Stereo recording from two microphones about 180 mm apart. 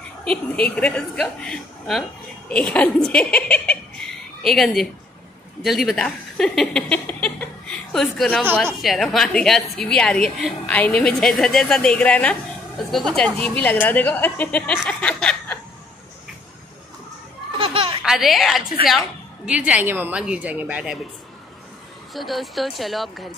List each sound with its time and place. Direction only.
0.2 s a woman's voice: 5° left (ahead or behind)
17.6 s a sound: 30° right (ahead or behind)
18.0 s a woman's voice: centre (ahead or behind)
22.1 s a woman's voice: centre (ahead or behind)